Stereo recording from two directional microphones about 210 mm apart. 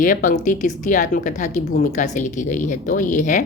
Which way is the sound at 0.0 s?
40° left (ahead or behind).